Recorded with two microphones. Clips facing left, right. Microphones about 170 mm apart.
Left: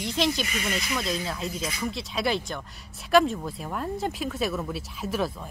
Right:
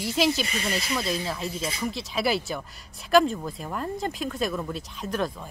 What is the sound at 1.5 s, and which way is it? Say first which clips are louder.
Speech: right 1 dB; 30° right (ahead or behind).